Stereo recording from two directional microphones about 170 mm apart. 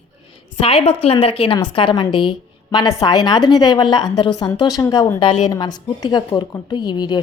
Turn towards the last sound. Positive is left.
turn(degrees=25)  # may be behind; listen again after turning